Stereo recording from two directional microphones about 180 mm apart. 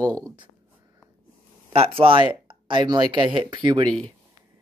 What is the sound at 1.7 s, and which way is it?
Speech, 30° right (ahead or behind).